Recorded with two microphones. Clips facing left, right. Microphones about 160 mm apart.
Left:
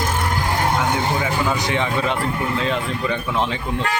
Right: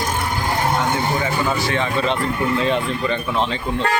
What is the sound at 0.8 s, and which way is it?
Vehicle, 10° left (ahead or behind).